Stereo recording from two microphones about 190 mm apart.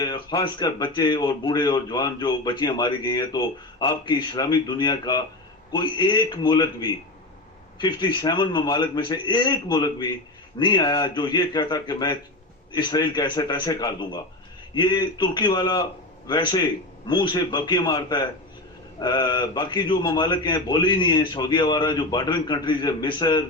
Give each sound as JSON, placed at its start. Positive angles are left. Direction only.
{"t": 0.0, "sound": "speech", "side_deg": 20}